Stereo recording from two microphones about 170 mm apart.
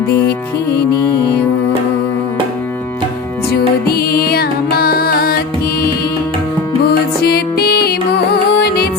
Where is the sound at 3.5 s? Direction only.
65° left (ahead or behind).